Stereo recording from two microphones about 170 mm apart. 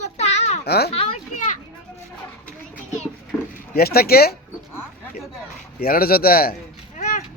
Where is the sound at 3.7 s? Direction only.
65° left (ahead or behind).